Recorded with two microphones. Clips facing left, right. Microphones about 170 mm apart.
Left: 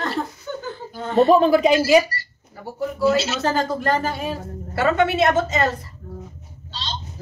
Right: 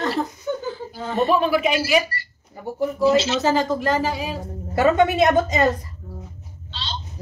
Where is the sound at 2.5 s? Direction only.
20° right (ahead or behind).